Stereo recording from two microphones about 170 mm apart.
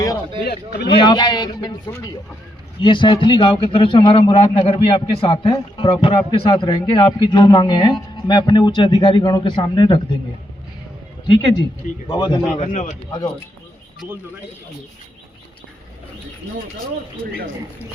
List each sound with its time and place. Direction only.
0.4 s speech: 70° left (ahead or behind)
0.9 s a man's voice: 25° left (ahead or behind)
11.3 s a man's voice: 30° left (ahead or behind)
12.5 s speech: 45° left (ahead or behind)